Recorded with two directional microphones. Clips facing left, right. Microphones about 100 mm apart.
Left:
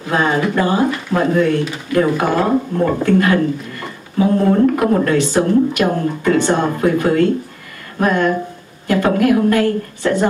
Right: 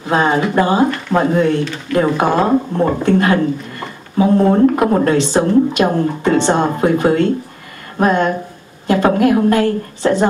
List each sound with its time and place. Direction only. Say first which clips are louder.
0.1 s a woman's voice: right 2 dB; 25° right (ahead or behind)